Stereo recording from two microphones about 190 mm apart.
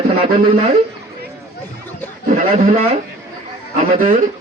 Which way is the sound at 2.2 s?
45° right (ahead or behind).